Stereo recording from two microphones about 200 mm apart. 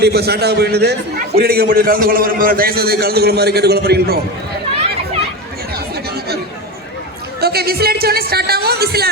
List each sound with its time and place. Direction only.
0.0 s a man's voice: 55° right (ahead or behind)
7.4 s a man's voice: 50° right (ahead or behind)